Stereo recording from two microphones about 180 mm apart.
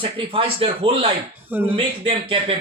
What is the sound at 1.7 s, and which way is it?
Speech, 30° right (ahead or behind).